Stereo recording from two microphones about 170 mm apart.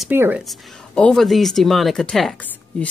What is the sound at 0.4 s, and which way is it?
Speech, centre (ahead or behind).